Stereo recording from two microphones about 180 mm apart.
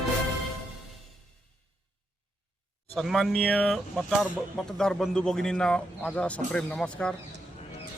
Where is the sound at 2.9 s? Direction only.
Centre (ahead or behind).